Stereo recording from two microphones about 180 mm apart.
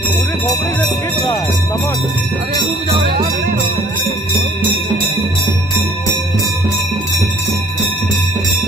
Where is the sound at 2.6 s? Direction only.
30° right (ahead or behind).